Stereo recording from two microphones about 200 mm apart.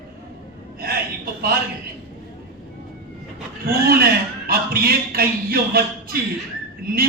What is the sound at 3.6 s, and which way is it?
A man's voice, 50° right (ahead or behind).